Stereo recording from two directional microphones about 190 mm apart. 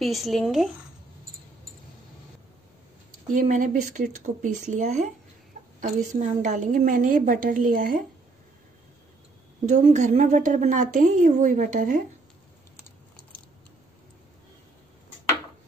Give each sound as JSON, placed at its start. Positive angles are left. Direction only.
{"t": 0.0, "sound": "speech", "side_deg": 0}
{"t": 3.3, "sound": "a woman's voice", "side_deg": -45}
{"t": 9.7, "sound": "a woman's voice", "side_deg": -40}